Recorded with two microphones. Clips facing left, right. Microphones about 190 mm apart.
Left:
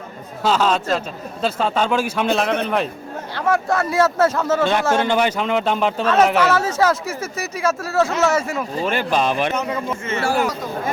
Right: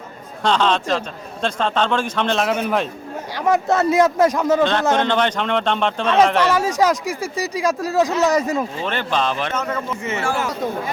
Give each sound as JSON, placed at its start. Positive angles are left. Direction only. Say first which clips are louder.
{"t": 0.4, "sound": "a man's voice", "louder": "even", "side_deg": 5}
{"t": 3.3, "sound": "speech", "louder": "right 2 dB", "side_deg": -20}
{"t": 4.9, "sound": "a man's voice", "louder": "even", "side_deg": 10}
{"t": 6.5, "sound": "speech", "louder": "even", "side_deg": -15}
{"t": 8.8, "sound": "speech", "louder": "left 2 dB", "side_deg": 10}
{"t": 10.0, "sound": "speech", "louder": "left 1 dB", "side_deg": -20}